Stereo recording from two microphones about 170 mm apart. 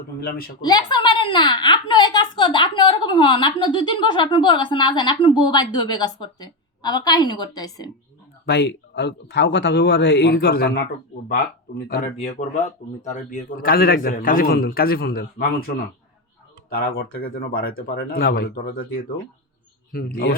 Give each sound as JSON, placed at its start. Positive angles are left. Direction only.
{"t": 0.2, "sound": "a man's voice", "side_deg": 60}
{"t": 0.6, "sound": "a woman's voice", "side_deg": 25}
{"t": 8.4, "sound": "a man's voice", "side_deg": 75}
{"t": 11.9, "sound": "a man's voice", "side_deg": 60}
{"t": 13.0, "sound": "a man's voice", "side_deg": 45}